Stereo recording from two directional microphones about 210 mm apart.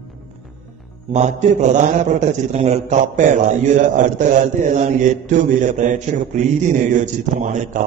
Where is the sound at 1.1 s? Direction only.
35° right (ahead or behind).